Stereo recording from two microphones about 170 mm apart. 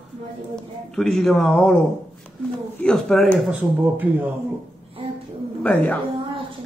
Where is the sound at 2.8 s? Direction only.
5° left (ahead or behind).